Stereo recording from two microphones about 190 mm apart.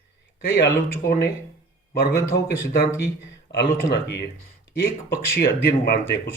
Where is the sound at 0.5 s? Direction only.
55° left (ahead or behind).